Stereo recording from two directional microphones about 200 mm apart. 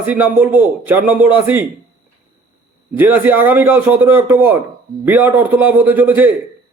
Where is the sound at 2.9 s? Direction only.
10° right (ahead or behind).